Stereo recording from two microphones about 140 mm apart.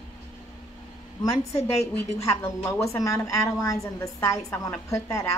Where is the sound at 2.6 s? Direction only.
15° left (ahead or behind).